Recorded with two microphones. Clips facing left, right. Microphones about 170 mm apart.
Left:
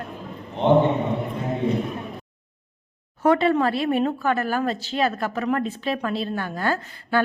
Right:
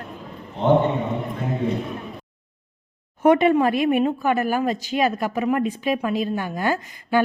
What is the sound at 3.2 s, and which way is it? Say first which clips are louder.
Speech: right 3 dB; 20° right (ahead or behind).